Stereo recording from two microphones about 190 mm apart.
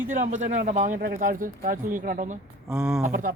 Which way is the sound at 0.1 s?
40° right (ahead or behind).